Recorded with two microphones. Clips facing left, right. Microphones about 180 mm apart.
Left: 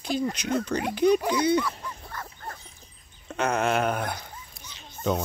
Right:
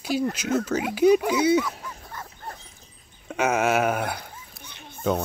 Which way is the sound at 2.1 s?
25° right (ahead or behind).